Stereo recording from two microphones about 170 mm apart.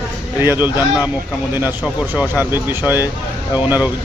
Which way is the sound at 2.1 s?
10° right (ahead or behind).